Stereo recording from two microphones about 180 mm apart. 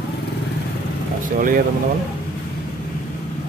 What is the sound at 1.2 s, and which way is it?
Speech, 50° right (ahead or behind).